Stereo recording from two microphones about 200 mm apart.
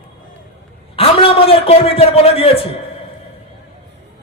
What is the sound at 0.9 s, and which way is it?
A man's voice, 25° left (ahead or behind).